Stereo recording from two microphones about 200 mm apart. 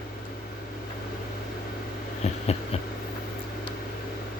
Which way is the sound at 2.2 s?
35° left (ahead or behind).